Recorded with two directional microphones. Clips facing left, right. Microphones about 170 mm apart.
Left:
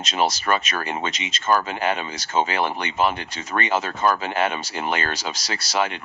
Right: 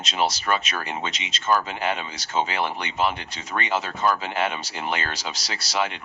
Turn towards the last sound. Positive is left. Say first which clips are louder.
# left 3 dB
turn(degrees=50)  # may be behind; listen again after turning